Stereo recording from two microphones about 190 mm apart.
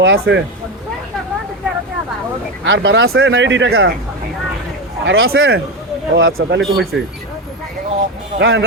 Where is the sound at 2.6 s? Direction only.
70° right (ahead or behind).